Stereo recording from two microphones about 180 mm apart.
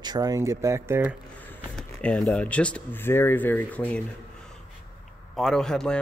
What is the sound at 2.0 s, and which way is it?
Speech, 5° left (ahead or behind).